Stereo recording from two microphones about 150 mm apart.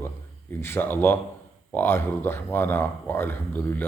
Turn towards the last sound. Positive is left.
turn(degrees=15)  # may be behind; listen again after turning